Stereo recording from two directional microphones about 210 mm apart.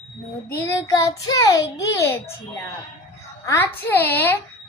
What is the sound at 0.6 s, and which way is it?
A child's voice, 15° left (ahead or behind).